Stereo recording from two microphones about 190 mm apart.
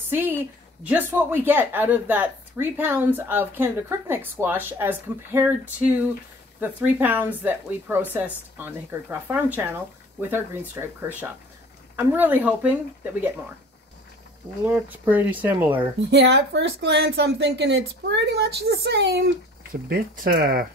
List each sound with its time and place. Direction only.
0.1 s a sound: 10° right (ahead or behind)
0.8 s a woman's voice: 10° right (ahead or behind)
14.6 s a woman's voice: 10° right (ahead or behind)
16.1 s speech: 65° right (ahead or behind)